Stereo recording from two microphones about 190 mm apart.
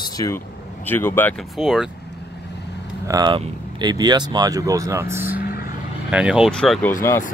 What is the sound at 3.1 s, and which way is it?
Speech, 20° right (ahead or behind).